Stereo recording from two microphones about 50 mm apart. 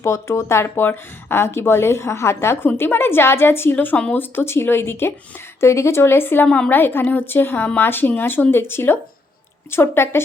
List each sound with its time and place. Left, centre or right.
0.0 s a woman's voice: left